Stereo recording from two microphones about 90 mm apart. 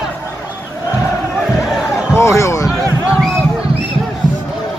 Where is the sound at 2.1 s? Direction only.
30° left (ahead or behind).